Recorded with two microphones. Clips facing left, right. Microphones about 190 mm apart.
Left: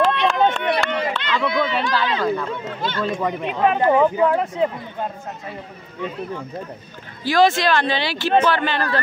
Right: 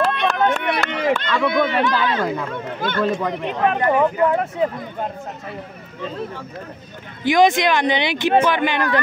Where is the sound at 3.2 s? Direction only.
5° left (ahead or behind).